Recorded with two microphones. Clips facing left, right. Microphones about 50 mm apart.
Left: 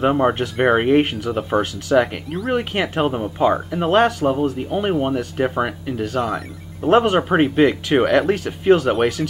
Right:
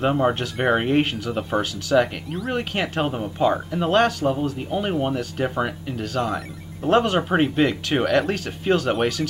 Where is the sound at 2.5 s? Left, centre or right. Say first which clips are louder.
Left 4 dB; centre.